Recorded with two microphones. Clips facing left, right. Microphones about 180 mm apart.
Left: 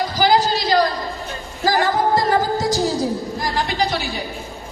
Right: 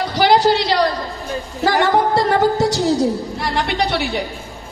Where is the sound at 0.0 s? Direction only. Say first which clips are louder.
Right 3 dB; 65° right (ahead or behind).